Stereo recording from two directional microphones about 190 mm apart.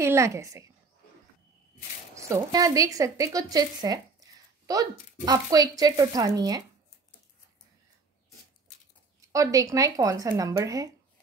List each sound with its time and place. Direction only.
0.0 s speech: 15° right (ahead or behind)
2.1 s a woman's voice: 15° right (ahead or behind)
9.3 s speech: 15° right (ahead or behind)